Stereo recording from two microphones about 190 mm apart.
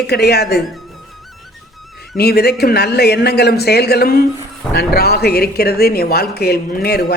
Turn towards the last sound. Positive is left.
turn(degrees=55)  # may be behind; listen again after turning